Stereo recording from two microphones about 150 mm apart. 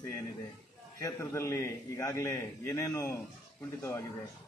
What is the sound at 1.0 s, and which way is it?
A man's voice, 20° left (ahead or behind).